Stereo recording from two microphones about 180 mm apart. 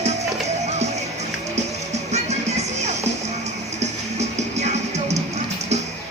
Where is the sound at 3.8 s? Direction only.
40° right (ahead or behind).